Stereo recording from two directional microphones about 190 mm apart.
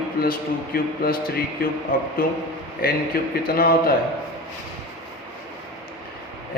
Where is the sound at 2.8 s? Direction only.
50° left (ahead or behind).